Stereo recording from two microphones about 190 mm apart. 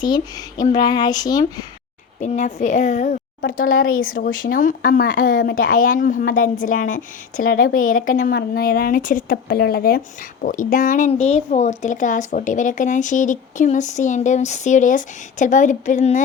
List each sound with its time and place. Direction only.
0.0 s speech: 20° left (ahead or behind)
2.2 s speech: 40° left (ahead or behind)